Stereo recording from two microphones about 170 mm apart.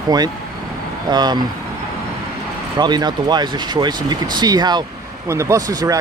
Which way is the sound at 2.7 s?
25° right (ahead or behind).